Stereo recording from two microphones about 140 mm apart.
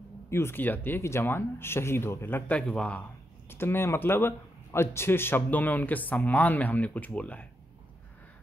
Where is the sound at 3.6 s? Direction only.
15° left (ahead or behind).